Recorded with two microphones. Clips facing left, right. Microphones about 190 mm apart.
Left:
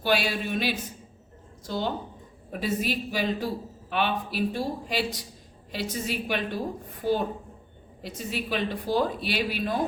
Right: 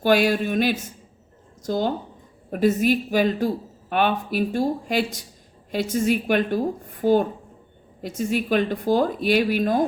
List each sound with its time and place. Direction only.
0.0 s a woman's voice: 50° right (ahead or behind)